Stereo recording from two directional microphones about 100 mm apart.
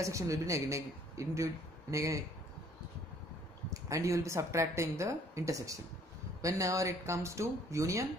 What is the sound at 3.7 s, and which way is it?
Speech, 30° right (ahead or behind).